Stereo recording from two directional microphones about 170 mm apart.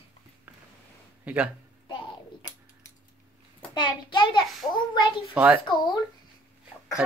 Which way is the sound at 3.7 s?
25° left (ahead or behind).